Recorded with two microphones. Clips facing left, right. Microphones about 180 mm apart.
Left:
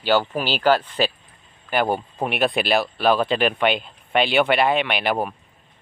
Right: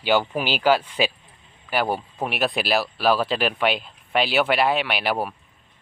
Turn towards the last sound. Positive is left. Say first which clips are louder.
# left 2 dB
turn(degrees=-5)  # may be behind; listen again after turning